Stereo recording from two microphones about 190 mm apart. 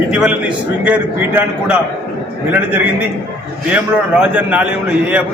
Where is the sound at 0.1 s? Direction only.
5° right (ahead or behind).